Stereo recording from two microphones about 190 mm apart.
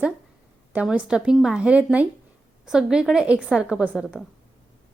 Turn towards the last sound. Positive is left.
turn(degrees=-5)  # may be behind; listen again after turning